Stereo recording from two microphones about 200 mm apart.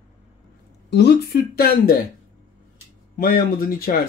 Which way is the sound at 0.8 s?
55° left (ahead or behind).